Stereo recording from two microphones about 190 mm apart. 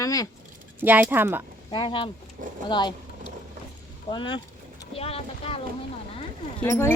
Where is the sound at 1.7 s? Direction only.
25° left (ahead or behind).